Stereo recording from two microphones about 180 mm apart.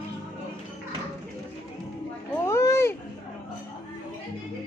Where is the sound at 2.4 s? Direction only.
15° left (ahead or behind).